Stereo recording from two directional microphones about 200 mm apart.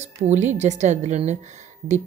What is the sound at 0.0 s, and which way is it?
A woman's voice, 35° right (ahead or behind).